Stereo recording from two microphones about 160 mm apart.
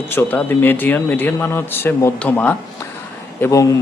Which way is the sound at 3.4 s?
20° left (ahead or behind).